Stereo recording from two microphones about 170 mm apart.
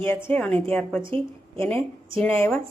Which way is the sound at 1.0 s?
30° right (ahead or behind).